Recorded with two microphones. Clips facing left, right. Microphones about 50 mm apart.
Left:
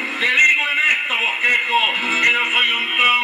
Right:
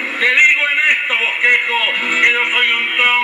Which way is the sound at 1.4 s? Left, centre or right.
Right.